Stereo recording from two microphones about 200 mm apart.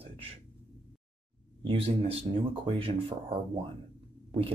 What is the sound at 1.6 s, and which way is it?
Speech, 30° right (ahead or behind).